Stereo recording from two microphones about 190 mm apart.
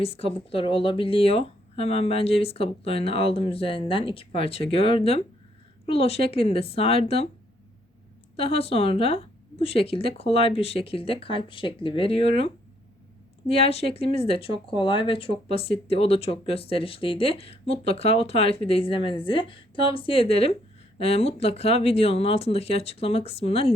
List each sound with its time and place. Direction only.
0.0 s speech: 30° left (ahead or behind)
8.4 s speech: 30° left (ahead or behind)
13.5 s speech: 30° left (ahead or behind)